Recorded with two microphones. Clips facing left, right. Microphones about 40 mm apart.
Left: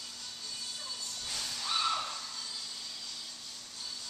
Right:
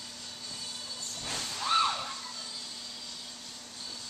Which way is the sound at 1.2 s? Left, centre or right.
Right.